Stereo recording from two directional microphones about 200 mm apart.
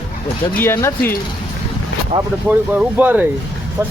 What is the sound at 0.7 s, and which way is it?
Speech, 15° left (ahead or behind).